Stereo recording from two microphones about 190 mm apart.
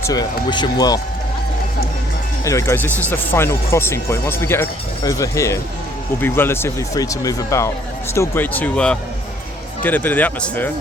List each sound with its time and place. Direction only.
0.0 s speech: 20° left (ahead or behind)
2.4 s speech: 15° left (ahead or behind)